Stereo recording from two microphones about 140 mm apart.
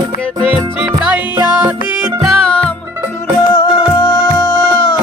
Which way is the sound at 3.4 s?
35° left (ahead or behind).